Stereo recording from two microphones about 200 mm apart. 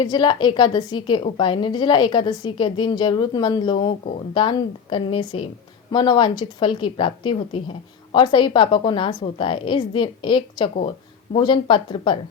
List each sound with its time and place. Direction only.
0.0 s a woman's voice: 20° left (ahead or behind)